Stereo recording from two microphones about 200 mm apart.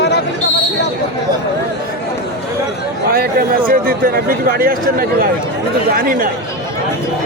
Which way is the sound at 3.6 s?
45° right (ahead or behind).